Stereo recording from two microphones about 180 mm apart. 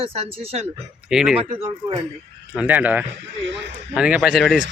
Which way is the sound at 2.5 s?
10° right (ahead or behind).